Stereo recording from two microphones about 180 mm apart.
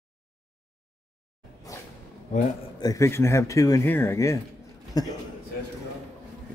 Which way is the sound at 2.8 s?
20° left (ahead or behind).